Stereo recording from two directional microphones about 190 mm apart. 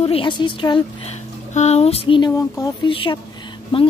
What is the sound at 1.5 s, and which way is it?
Speech, 35° left (ahead or behind).